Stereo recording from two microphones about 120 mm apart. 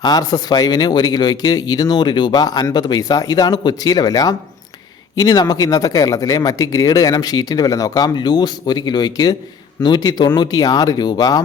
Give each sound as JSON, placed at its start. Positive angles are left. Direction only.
{"t": 0.0, "sound": "speech", "side_deg": 35}